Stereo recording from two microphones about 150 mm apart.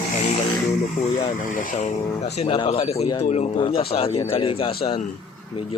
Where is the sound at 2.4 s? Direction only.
40° left (ahead or behind).